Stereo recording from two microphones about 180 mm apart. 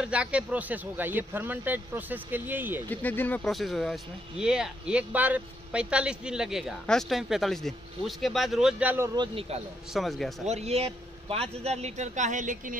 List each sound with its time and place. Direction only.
0.0 s speech: 5° right (ahead or behind)
2.9 s speech: 10° left (ahead or behind); by 9.1 s 10° right (ahead or behind)
9.1 s a man's voice: 25° right (ahead or behind)
9.9 s speech: centre (ahead or behind)
10.4 s a man's voice: 35° right (ahead or behind)